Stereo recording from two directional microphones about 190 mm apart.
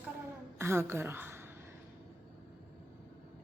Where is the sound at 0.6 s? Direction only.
15° right (ahead or behind).